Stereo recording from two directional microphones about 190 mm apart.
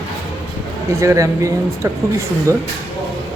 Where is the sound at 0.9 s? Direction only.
15° right (ahead or behind).